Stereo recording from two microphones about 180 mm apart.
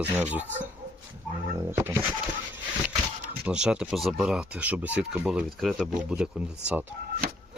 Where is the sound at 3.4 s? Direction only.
5° right (ahead or behind).